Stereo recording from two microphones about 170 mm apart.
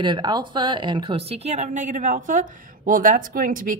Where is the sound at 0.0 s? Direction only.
25° right (ahead or behind).